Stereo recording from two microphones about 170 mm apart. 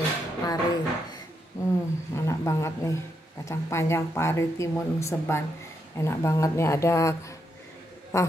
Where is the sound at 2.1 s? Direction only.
15° left (ahead or behind).